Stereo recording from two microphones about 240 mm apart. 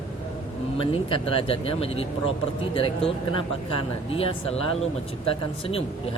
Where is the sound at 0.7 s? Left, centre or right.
Left.